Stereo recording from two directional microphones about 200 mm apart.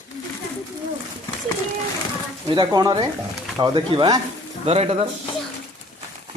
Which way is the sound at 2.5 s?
20° right (ahead or behind).